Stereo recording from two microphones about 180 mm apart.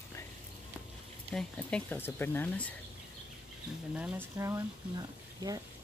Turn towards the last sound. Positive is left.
turn(degrees=-20)  # may be behind; listen again after turning